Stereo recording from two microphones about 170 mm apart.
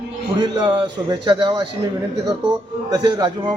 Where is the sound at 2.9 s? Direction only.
25° right (ahead or behind).